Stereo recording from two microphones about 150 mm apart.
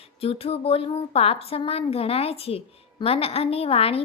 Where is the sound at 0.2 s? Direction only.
40° left (ahead or behind).